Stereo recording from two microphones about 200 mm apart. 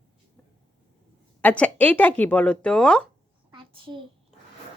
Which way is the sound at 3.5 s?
25° right (ahead or behind).